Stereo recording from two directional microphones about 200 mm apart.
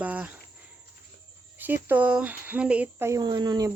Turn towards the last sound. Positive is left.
turn(degrees=-20)  # may be behind; listen again after turning